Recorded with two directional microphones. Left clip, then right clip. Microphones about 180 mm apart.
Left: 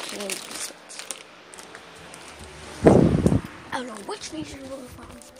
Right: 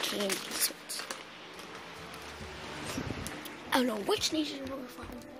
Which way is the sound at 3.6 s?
40° right (ahead or behind).